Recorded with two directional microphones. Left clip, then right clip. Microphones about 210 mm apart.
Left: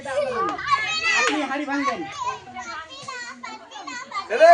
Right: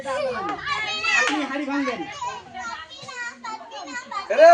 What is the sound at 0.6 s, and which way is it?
Speech, 15° left (ahead or behind).